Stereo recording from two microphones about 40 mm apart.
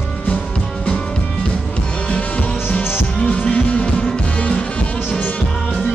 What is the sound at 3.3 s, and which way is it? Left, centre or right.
Music, left.